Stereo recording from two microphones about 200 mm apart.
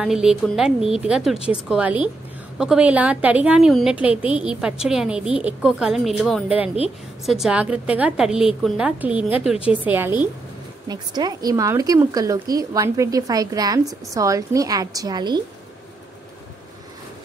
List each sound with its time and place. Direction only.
0.0 s a woman's voice: 5° right (ahead or behind)
10.9 s speech: 20° right (ahead or behind)